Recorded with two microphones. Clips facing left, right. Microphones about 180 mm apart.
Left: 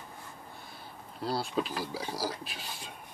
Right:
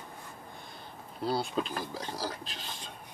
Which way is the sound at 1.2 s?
Centre (ahead or behind).